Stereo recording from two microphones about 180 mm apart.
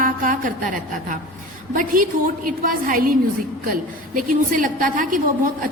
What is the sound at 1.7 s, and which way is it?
A woman's voice, 50° right (ahead or behind).